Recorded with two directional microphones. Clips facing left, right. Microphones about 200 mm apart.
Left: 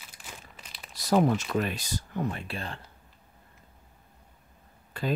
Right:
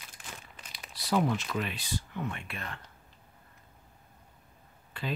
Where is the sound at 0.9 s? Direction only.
45° left (ahead or behind).